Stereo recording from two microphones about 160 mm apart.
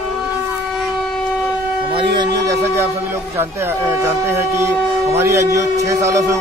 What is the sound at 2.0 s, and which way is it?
Speech, 30° right (ahead or behind).